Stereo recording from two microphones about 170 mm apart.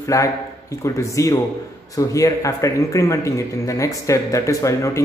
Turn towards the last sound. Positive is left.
turn(degrees=20)  # may be behind; listen again after turning